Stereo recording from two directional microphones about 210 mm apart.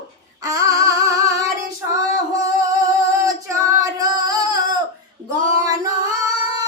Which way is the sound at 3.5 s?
15° right (ahead or behind).